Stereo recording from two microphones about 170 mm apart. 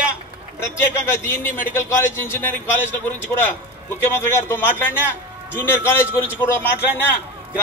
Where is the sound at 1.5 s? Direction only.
15° left (ahead or behind).